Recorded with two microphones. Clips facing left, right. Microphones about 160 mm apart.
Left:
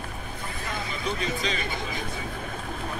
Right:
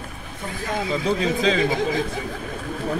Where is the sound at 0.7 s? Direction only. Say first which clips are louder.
Right 10 dB; 90° right.